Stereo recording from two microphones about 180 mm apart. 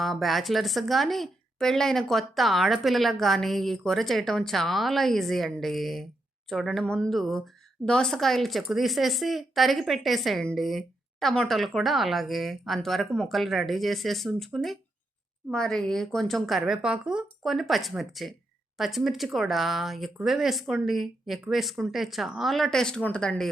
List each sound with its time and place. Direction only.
0.0 s a woman's voice: centre (ahead or behind)